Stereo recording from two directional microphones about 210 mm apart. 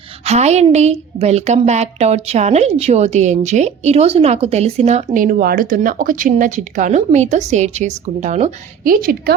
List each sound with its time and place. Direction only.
0.3 s a woman's voice: 30° right (ahead or behind)
5.1 s a woman's voice: 40° right (ahead or behind)